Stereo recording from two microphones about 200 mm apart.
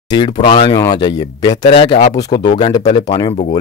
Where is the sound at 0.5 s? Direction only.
25° left (ahead or behind).